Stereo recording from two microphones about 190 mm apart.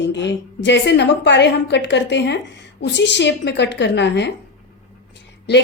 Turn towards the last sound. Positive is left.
turn(degrees=65)  # may be behind; listen again after turning